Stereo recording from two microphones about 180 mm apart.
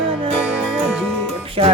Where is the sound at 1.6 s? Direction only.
30° right (ahead or behind).